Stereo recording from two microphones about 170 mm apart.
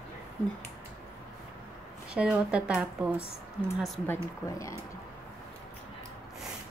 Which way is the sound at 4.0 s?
15° left (ahead or behind).